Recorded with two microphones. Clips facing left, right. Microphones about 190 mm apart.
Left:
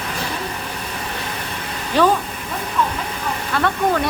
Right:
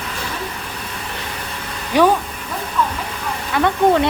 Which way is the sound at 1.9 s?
15° right (ahead or behind).